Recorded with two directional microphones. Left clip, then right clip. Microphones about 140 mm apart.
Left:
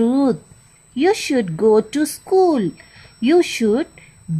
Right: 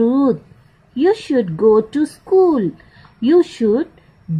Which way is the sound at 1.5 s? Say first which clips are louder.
Right 2 dB; 10° left (ahead or behind).